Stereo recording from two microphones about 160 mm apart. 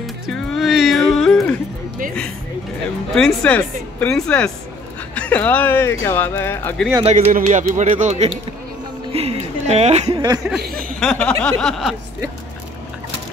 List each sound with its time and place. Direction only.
0.3 s a sound: centre (ahead or behind)
3.2 s speech: 5° left (ahead or behind)
7.0 s speech: 45° right (ahead or behind)
9.1 s a sound: 40° right (ahead or behind)
10.1 s speech: 25° right (ahead or behind)
10.6 s speech: 70° right (ahead or behind)
11.0 s speech: 5° left (ahead or behind)